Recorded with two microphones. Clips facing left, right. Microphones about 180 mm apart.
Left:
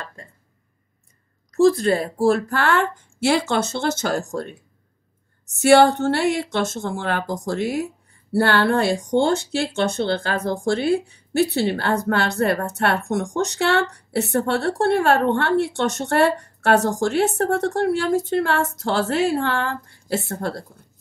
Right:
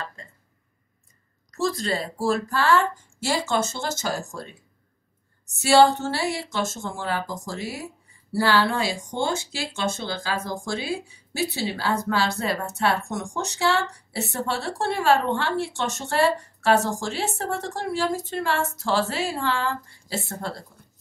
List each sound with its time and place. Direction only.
1.6 s speech: 55° left (ahead or behind)
5.6 s speech: 60° left (ahead or behind)